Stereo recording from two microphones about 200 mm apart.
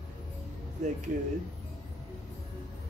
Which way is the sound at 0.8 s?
40° right (ahead or behind).